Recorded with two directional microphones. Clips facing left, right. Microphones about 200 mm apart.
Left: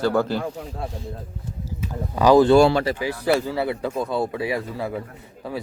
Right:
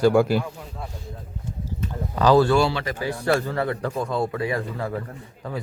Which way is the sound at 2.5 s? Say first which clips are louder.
Left 6 dB; 45° left (ahead or behind).